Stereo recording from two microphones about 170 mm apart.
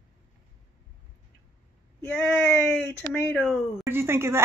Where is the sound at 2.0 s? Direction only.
5° left (ahead or behind).